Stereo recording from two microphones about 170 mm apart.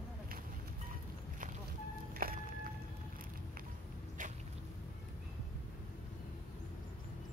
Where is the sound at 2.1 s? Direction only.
55° right (ahead or behind).